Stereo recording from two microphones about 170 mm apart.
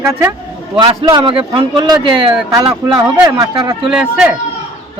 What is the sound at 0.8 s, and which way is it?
A man's voice, 30° right (ahead or behind).